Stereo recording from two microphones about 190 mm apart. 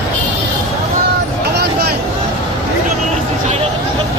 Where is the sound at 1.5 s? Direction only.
55° right (ahead or behind).